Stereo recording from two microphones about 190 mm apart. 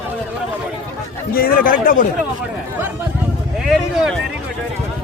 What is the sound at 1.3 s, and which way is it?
Speech, 50° left (ahead or behind).